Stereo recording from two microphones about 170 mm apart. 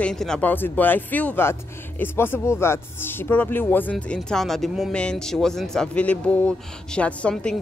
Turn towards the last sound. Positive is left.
turn(degrees=5)  # may be behind; listen again after turning